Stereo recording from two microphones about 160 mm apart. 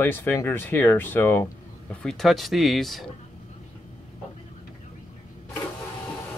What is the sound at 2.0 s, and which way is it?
Speech, centre (ahead or behind).